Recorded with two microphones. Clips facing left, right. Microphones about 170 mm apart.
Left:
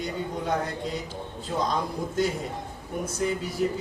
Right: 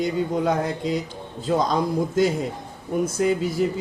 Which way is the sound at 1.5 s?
90° right.